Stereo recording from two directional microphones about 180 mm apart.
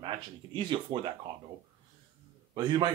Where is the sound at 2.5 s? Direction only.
25° right (ahead or behind).